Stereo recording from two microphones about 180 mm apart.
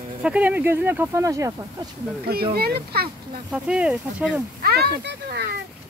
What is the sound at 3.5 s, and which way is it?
Speech, 5° right (ahead or behind).